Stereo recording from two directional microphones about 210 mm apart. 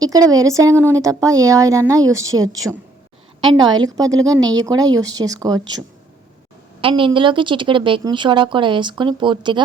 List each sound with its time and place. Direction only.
0.0 s speech: 15° right (ahead or behind)
6.8 s a woman's voice: 25° right (ahead or behind)